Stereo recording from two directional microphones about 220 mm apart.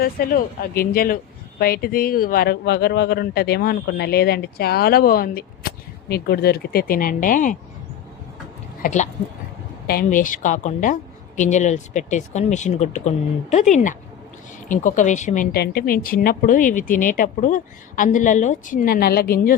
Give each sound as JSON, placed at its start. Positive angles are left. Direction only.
{"t": 0.0, "sound": "speech", "side_deg": 40}
{"t": 8.8, "sound": "a woman's voice", "side_deg": 35}